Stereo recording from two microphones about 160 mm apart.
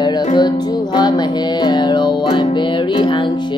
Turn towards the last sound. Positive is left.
turn(degrees=30)  # may be behind; listen again after turning